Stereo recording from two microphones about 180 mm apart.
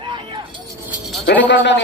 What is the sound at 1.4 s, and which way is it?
Speech, 75° left (ahead or behind).